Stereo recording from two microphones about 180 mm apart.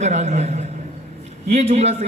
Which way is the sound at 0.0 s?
40° right (ahead or behind).